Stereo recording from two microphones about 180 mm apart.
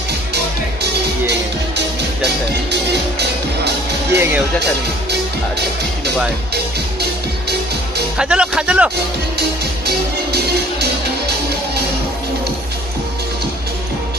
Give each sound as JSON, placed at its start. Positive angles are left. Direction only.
{"t": 1.2, "sound": "music", "side_deg": -70}
{"t": 6.5, "sound": "music", "side_deg": -65}
{"t": 8.2, "sound": "speech", "side_deg": -5}
{"t": 9.4, "sound": "music", "side_deg": -65}